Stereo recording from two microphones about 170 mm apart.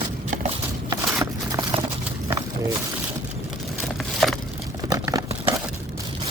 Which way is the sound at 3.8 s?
Centre (ahead or behind).